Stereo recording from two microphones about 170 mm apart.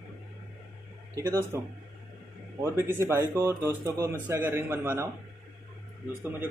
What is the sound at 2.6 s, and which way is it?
Speech, 15° right (ahead or behind).